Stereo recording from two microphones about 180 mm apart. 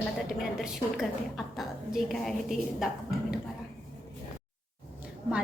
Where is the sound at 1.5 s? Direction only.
Centre (ahead or behind).